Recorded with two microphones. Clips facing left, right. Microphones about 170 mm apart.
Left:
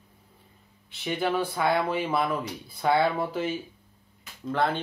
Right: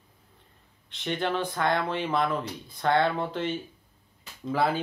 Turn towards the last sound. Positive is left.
turn(degrees=-5)  # may be behind; listen again after turning